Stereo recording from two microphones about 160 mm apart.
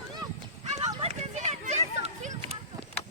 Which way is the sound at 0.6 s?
45° right (ahead or behind).